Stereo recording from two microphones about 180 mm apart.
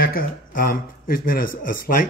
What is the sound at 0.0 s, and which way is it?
A man's voice, 50° left (ahead or behind).